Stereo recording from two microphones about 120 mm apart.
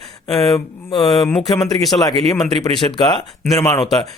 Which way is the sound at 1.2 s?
5° left (ahead or behind).